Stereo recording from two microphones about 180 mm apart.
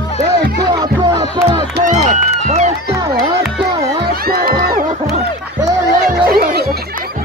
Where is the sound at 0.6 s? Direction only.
20° right (ahead or behind).